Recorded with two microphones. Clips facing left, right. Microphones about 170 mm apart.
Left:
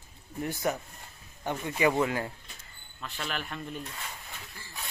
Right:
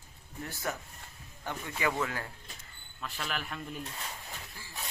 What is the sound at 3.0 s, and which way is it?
Speech, 5° right (ahead or behind).